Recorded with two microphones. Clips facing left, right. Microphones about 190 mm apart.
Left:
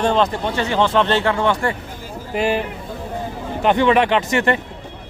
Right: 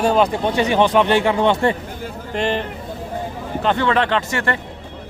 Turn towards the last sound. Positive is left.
turn(degrees=20)  # may be behind; listen again after turning